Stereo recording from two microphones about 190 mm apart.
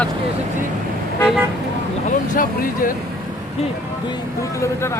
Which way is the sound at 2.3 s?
45° left (ahead or behind).